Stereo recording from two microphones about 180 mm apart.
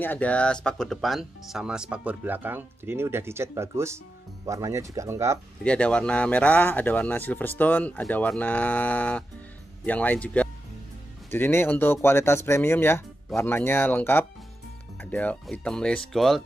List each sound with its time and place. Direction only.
0.0 s speech: 10° left (ahead or behind); by 5.4 s 15° right (ahead or behind)
5.6 s speech: 5° left (ahead or behind)